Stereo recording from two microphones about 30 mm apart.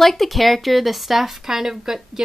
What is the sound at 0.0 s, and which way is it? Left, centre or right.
A woman's voice, centre.